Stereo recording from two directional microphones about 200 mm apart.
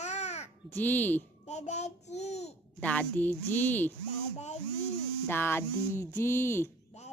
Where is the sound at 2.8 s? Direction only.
5° left (ahead or behind).